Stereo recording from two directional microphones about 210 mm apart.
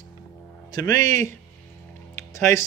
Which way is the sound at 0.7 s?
15° left (ahead or behind).